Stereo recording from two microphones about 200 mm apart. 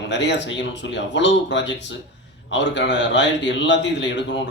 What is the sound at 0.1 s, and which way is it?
A man's voice, 60° left (ahead or behind).